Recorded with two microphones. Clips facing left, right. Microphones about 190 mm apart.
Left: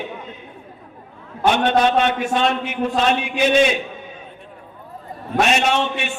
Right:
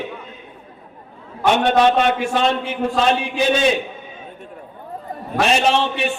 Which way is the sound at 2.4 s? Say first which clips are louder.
Right 1 dB; 30° right (ahead or behind).